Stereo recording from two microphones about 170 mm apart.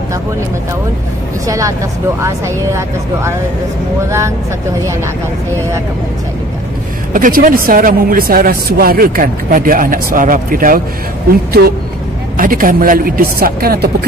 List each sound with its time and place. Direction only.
2.2 s speech: 15° right (ahead or behind)
7.2 s speech: 55° right (ahead or behind)
11.6 s speech: 65° right (ahead or behind)
12.4 s speech: 55° right (ahead or behind)